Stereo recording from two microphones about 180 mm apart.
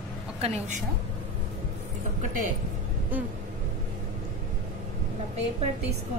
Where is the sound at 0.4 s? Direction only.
40° right (ahead or behind).